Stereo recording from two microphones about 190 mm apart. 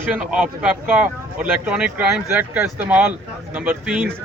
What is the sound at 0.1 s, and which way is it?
A man's voice, 5° right (ahead or behind).